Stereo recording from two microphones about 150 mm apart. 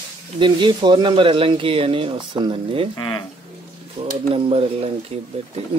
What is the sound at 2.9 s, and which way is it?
Speech, 30° left (ahead or behind).